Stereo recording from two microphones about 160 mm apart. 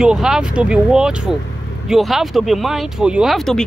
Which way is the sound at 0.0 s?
5° right (ahead or behind).